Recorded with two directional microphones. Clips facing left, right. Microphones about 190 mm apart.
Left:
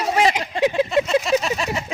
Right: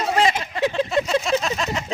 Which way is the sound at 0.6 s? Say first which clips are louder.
Left 3 dB; 15° left (ahead or behind).